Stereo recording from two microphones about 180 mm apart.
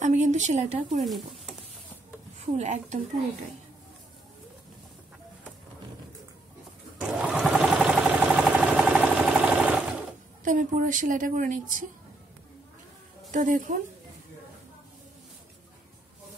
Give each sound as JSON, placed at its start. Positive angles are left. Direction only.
{"t": 0.0, "sound": "a woman's voice", "side_deg": -40}
{"t": 0.9, "sound": "speech", "side_deg": 0}
{"t": 2.4, "sound": "a woman's voice", "side_deg": -40}
{"t": 7.0, "sound": "sewing machine", "side_deg": -5}
{"t": 10.4, "sound": "a woman's voice", "side_deg": -50}
{"t": 13.3, "sound": "a woman's voice", "side_deg": -45}